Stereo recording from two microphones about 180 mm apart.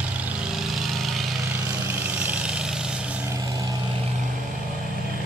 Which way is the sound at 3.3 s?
20° right (ahead or behind).